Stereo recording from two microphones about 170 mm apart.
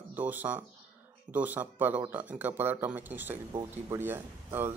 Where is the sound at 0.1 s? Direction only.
10° right (ahead or behind).